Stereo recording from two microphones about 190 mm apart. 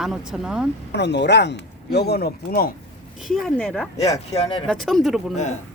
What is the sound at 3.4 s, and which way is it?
Speech, 5° left (ahead or behind).